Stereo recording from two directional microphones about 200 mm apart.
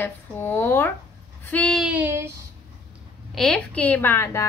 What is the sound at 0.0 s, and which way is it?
Speech, 10° left (ahead or behind).